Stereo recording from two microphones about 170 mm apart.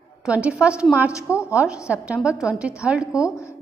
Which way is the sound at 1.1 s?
20° left (ahead or behind).